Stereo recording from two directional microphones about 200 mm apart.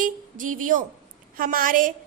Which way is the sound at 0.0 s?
40° right (ahead or behind).